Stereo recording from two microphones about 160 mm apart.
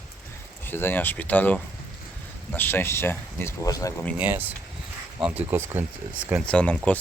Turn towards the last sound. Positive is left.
turn(degrees=10)  # may be behind; listen again after turning